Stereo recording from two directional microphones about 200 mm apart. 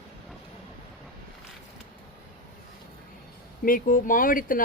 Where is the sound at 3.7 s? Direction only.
45° left (ahead or behind).